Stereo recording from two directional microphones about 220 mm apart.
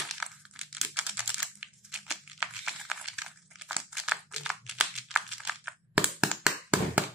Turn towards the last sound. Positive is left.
turn(degrees=-5)  # may be behind; listen again after turning